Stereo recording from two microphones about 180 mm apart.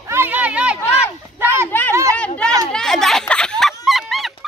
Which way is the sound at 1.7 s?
10° left (ahead or behind).